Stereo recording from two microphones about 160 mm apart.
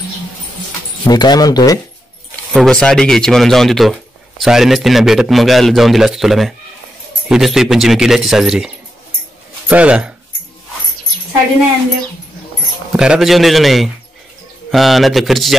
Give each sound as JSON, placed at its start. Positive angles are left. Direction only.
{"t": 1.0, "sound": "speech", "side_deg": 25}
{"t": 2.5, "sound": "speech", "side_deg": 5}
{"t": 12.9, "sound": "speech", "side_deg": -5}